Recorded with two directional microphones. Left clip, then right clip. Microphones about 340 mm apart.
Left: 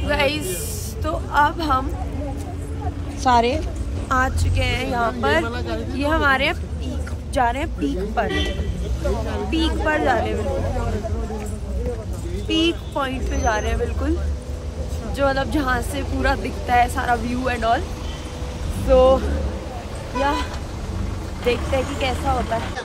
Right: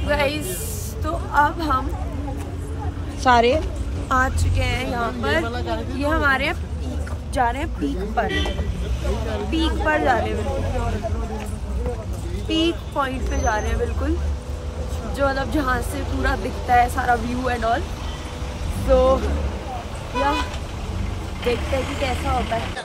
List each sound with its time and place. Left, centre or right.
0.0 s a woman's voice: centre
3.3 s speech: centre
12.4 s speech: centre
15.1 s speech: centre
18.9 s speech: centre
21.5 s speech: centre